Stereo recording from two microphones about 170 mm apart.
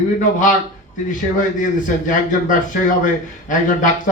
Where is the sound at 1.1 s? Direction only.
50° left (ahead or behind).